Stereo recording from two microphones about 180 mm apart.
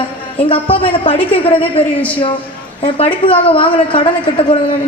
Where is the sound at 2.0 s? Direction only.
10° left (ahead or behind).